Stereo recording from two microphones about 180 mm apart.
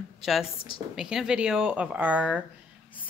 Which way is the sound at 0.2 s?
Centre (ahead or behind).